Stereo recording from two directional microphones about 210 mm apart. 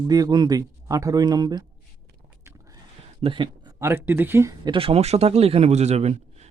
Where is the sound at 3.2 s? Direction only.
25° right (ahead or behind).